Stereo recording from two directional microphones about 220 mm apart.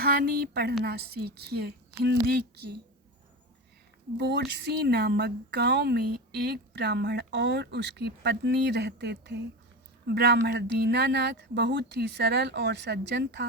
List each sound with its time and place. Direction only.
0.0 s a woman's voice: 45° right (ahead or behind)
4.2 s a woman's voice: 50° right (ahead or behind)